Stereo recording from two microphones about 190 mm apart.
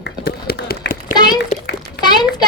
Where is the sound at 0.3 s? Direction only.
55° left (ahead or behind).